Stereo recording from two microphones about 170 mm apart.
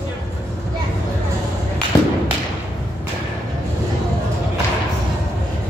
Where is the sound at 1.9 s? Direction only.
20° left (ahead or behind).